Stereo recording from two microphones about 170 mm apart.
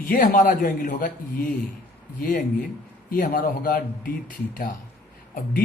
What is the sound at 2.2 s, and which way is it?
A man's voice, 50° left (ahead or behind).